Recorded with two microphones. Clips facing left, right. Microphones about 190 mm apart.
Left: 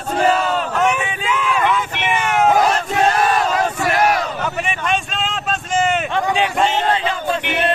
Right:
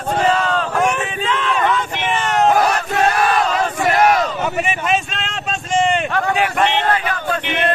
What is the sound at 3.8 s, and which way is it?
Battle cry, 20° right (ahead or behind).